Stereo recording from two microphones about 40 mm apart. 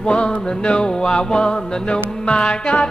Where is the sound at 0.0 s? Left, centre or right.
Left.